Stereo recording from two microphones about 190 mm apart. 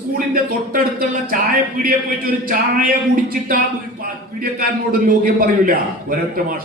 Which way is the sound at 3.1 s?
50° right (ahead or behind).